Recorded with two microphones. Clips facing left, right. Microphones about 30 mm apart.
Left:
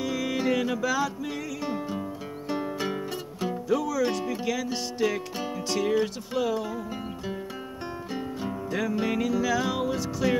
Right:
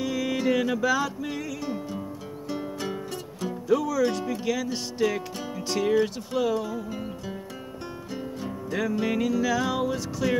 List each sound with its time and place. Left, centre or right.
0.0 s music: centre
1.6 s music: centre
3.6 s speech: centre
4.0 s music: centre
8.1 s guitar: centre
8.6 s music: centre